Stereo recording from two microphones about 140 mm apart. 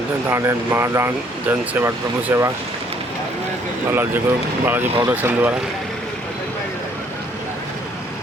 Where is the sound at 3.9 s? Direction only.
15° right (ahead or behind).